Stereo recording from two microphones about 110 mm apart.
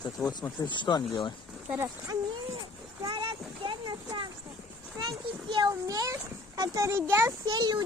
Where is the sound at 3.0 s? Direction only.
50° right (ahead or behind); by 7.0 s 30° right (ahead or behind).